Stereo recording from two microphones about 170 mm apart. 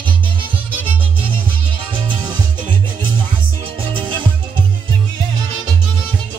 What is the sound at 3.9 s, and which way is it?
Music, 30° right (ahead or behind).